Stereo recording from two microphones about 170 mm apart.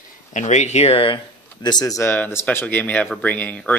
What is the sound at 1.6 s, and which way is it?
Speech, 20° left (ahead or behind).